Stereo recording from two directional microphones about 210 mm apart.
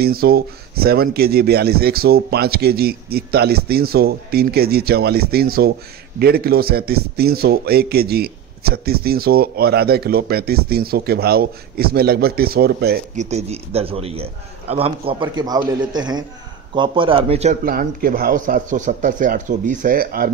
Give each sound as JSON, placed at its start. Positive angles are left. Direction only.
{"t": 0.0, "sound": "a man's voice", "side_deg": -45}
{"t": 13.1, "sound": "a man's voice", "side_deg": -35}
{"t": 17.6, "sound": "speech", "side_deg": -45}